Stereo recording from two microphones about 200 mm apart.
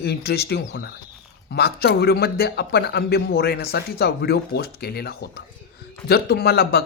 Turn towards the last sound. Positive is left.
turn(degrees=50)  # may be behind; listen again after turning